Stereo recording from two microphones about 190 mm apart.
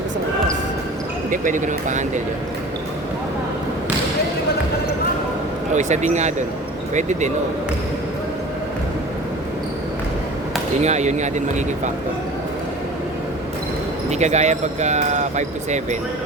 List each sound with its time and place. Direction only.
1.3 s speech: 45° right (ahead or behind)
5.7 s speech: 40° right (ahead or behind)
10.8 s speech: 35° right (ahead or behind)
14.1 s speech: 35° right (ahead or behind)